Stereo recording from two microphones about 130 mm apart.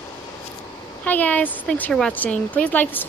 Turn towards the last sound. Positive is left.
turn(degrees=15)  # may be behind; listen again after turning